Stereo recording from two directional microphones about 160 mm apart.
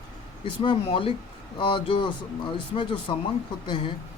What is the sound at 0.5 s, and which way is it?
Speech, 30° left (ahead or behind).